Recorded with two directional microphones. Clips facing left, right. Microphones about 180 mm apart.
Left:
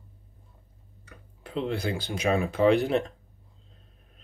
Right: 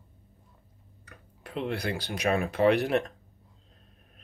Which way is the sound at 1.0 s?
30° left (ahead or behind).